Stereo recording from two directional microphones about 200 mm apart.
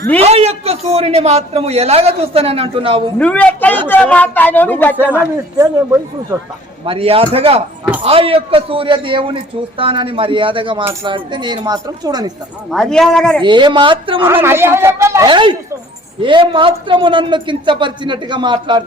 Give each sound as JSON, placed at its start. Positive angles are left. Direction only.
{"t": 0.2, "sound": "a man's voice", "side_deg": -30}
{"t": 3.2, "sound": "speech", "side_deg": 5}
{"t": 5.5, "sound": "speech", "side_deg": -15}
{"t": 6.8, "sound": "a man's voice", "side_deg": -30}
{"t": 12.7, "sound": "speech", "side_deg": 5}
{"t": 13.4, "sound": "a man's voice", "side_deg": -25}
{"t": 14.3, "sound": "a man's voice", "side_deg": -10}